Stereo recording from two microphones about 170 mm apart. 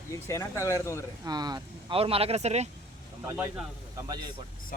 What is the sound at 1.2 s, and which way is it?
Speech, 25° right (ahead or behind).